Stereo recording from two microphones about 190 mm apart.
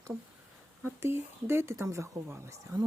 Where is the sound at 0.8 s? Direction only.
15° right (ahead or behind).